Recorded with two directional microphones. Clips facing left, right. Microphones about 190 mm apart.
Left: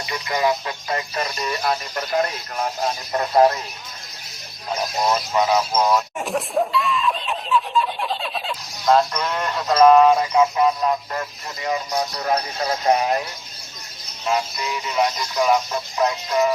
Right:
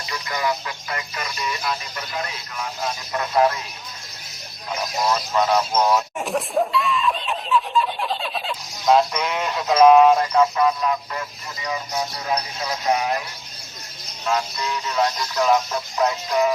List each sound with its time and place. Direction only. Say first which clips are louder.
0.0 s music: left 4 dB; 25° left (ahead or behind); by 2.6 s 50° left (ahead or behind)
2.8 s music: even; 35° left (ahead or behind)
5.3 s speech: right 1 dB; 10° left (ahead or behind)
11.6 s music: left 3 dB; 50° left (ahead or behind)
14.3 s speech: left 1 dB; 15° left (ahead or behind)